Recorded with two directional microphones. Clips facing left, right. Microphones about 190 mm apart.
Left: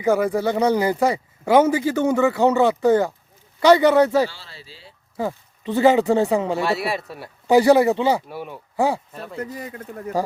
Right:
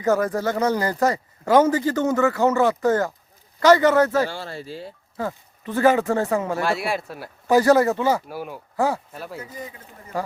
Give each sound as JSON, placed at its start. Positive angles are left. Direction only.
{"t": 0.0, "sound": "speech", "side_deg": 10}
{"t": 4.3, "sound": "speech", "side_deg": -50}
{"t": 5.1, "sound": "speech", "side_deg": 15}
{"t": 6.6, "sound": "speech", "side_deg": 0}
{"t": 7.4, "sound": "speech", "side_deg": 15}
{"t": 8.3, "sound": "speech", "side_deg": 0}
{"t": 8.7, "sound": "speech", "side_deg": 15}
{"t": 9.1, "sound": "speech", "side_deg": -5}
{"t": 9.4, "sound": "speech", "side_deg": 65}